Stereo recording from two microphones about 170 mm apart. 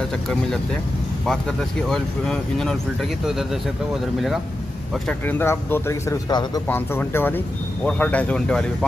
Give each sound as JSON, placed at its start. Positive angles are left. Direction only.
{"t": 1.2, "sound": "speech", "side_deg": 5}
{"t": 5.0, "sound": "speech", "side_deg": 10}
{"t": 6.7, "sound": "speech", "side_deg": 15}